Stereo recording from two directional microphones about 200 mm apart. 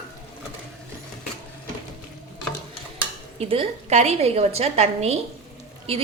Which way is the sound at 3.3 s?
30° right (ahead or behind).